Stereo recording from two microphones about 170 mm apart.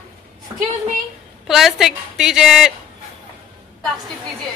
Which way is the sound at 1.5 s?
Centre (ahead or behind).